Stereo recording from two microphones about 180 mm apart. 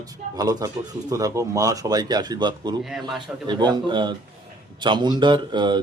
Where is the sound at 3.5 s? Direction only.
25° right (ahead or behind).